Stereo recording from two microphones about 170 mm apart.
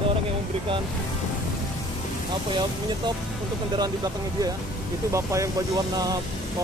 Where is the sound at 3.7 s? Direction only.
20° right (ahead or behind).